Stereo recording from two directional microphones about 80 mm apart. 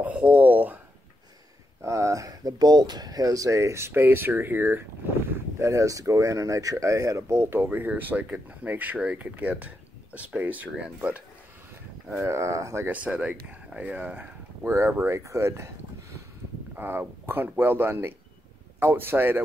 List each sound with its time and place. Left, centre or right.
0.0 s speech: centre
1.8 s speech: right
5.6 s speech: right; by 10.7 s centre
12.1 s speech: right
12.8 s speech: centre
15.1 s speech: right